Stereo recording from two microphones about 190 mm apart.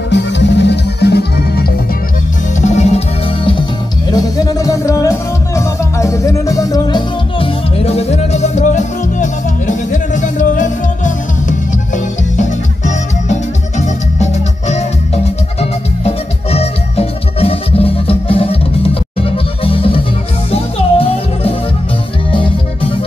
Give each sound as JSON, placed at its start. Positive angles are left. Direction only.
{"t": 0.1, "sound": "music", "side_deg": 65}
{"t": 2.6, "sound": "music", "side_deg": 35}
{"t": 4.1, "sound": "music", "side_deg": 15}